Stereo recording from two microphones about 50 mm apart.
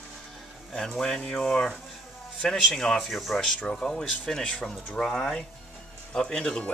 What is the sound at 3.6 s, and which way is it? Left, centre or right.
Speech, centre.